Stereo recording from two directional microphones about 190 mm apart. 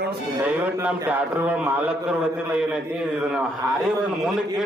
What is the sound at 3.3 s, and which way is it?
A man's voice, centre (ahead or behind).